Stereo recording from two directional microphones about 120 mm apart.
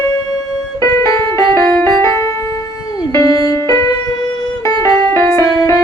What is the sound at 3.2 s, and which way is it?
Music, 25° left (ahead or behind).